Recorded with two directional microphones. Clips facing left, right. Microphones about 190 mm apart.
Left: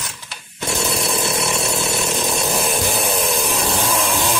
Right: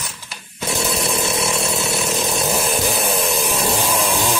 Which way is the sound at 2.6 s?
Centre (ahead or behind).